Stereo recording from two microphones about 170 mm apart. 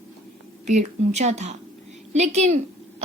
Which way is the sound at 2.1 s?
40° right (ahead or behind).